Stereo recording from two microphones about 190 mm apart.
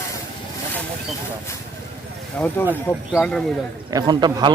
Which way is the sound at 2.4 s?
5° left (ahead or behind).